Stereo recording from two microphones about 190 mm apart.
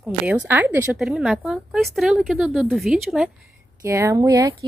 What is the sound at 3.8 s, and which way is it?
Speech, 15° right (ahead or behind).